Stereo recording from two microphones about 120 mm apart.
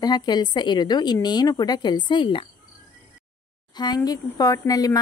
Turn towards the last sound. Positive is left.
turn(degrees=30)  # may be behind; listen again after turning